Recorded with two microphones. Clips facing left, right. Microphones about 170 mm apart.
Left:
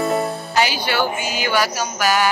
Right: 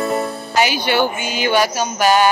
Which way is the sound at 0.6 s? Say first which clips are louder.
Right 3 dB; 20° right (ahead or behind).